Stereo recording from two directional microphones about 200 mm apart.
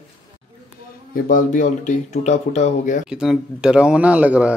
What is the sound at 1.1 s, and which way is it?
Speech, 45° left (ahead or behind).